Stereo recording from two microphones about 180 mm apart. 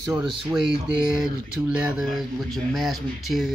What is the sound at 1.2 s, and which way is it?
Speech, 5° right (ahead or behind).